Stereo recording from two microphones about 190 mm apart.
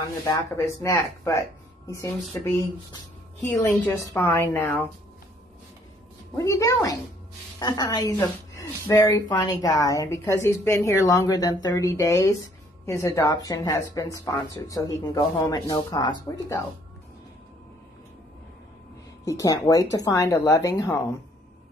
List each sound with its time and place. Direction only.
0.3 s a woman's voice: 15° left (ahead or behind)
6.3 s a woman's voice: 15° left (ahead or behind)
19.2 s a woman's voice: 20° left (ahead or behind)